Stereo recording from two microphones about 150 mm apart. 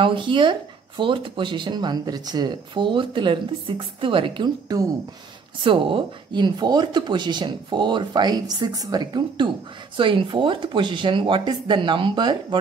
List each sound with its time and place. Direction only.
0.0 s speech: 35° right (ahead or behind)